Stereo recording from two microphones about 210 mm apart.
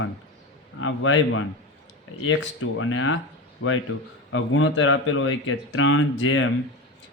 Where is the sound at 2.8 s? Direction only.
70° left (ahead or behind).